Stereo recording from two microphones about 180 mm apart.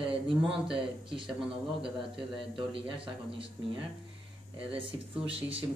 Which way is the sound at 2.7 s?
30° right (ahead or behind).